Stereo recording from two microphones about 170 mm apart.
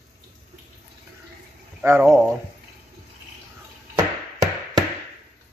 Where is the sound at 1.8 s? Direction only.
15° right (ahead or behind).